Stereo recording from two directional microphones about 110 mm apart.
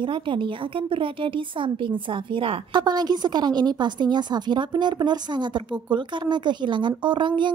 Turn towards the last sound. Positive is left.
turn(degrees=-45)  # may be behind; listen again after turning